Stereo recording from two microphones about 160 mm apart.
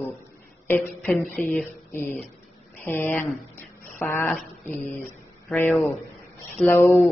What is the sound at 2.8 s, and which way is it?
A woman's voice, 15° left (ahead or behind).